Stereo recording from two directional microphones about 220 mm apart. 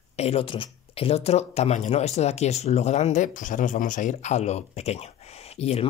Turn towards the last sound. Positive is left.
turn(degrees=30)  # may be behind; listen again after turning